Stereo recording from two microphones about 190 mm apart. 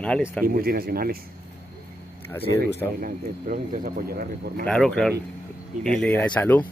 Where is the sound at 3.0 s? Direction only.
50° right (ahead or behind).